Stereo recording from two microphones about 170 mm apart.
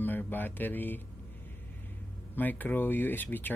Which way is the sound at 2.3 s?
10° left (ahead or behind).